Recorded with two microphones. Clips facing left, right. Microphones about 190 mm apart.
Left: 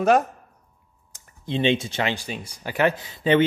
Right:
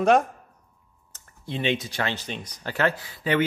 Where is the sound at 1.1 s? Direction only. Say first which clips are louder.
Left 5 dB; 20° left (ahead or behind).